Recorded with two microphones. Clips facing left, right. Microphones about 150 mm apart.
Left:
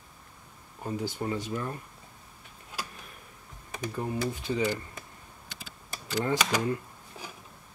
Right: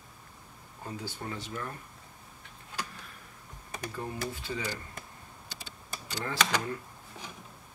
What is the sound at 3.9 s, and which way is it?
Speech, 20° left (ahead or behind).